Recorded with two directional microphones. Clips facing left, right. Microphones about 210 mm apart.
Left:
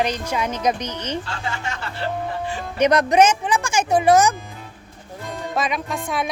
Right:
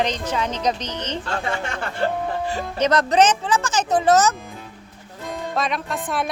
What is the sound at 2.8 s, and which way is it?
Speech, 15° left (ahead or behind).